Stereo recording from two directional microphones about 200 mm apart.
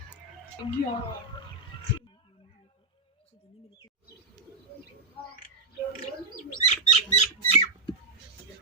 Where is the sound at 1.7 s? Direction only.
25° left (ahead or behind).